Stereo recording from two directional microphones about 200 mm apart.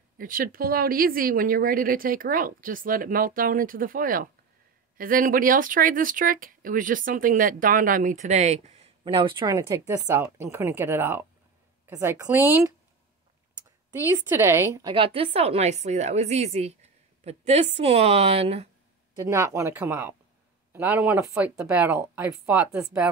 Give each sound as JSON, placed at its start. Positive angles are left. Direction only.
{"t": 0.2, "sound": "a woman's voice", "side_deg": -45}
{"t": 14.3, "sound": "a woman's voice", "side_deg": -10}
{"t": 19.1, "sound": "speech", "side_deg": -15}